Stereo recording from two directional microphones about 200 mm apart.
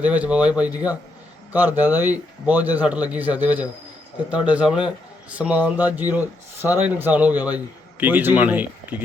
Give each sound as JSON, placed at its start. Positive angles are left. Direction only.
{"t": 0.0, "sound": "speech", "side_deg": -5}